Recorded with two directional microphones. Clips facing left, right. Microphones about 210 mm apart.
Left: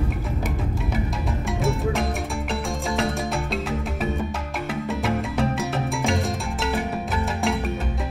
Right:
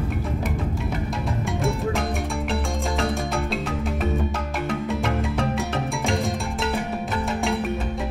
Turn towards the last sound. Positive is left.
turn(degrees=0)  # may be behind; listen again after turning